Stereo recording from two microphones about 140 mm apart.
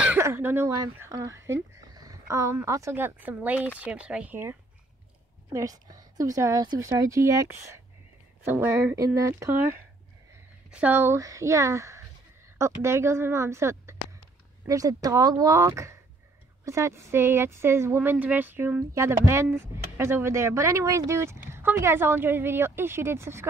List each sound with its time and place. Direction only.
0.0 s a woman's voice: 15° right (ahead or behind)
8.5 s a woman's voice: 15° right (ahead or behind)
10.7 s a woman's voice: 10° right (ahead or behind)